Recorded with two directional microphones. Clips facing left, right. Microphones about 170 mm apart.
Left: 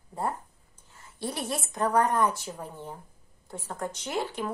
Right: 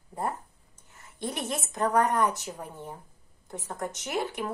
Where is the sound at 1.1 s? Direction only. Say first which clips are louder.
Even; 20° right (ahead or behind).